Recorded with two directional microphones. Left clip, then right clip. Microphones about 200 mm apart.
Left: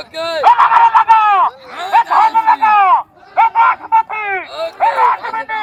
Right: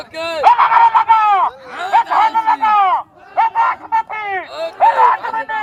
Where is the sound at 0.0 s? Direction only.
20° left (ahead or behind).